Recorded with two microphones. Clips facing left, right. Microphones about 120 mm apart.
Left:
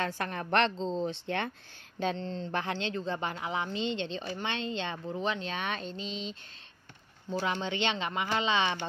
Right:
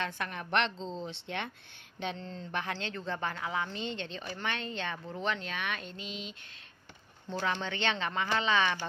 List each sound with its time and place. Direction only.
0.0 s a woman's voice: 40° left (ahead or behind); by 5.5 s 15° left (ahead or behind)
5.5 s speech: 30° left (ahead or behind)
7.2 s speech: 10° left (ahead or behind)